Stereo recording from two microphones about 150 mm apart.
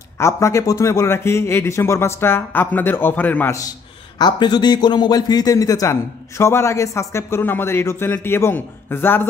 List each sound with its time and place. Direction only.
0.2 s a man's voice: 20° left (ahead or behind)
4.2 s a man's voice: 30° left (ahead or behind); by 9.2 s 15° left (ahead or behind)